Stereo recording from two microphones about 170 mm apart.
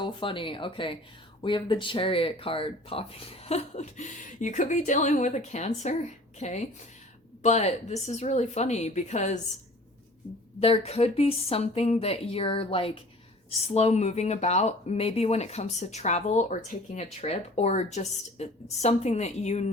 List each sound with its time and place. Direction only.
0.0 s speech: 30° left (ahead or behind)
10.6 s speech: 35° left (ahead or behind)